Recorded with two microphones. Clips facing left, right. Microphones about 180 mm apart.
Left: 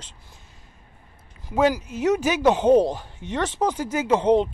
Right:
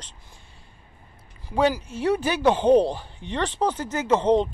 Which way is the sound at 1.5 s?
10° left (ahead or behind).